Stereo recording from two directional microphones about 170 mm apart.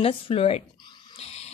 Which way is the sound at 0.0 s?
35° left (ahead or behind).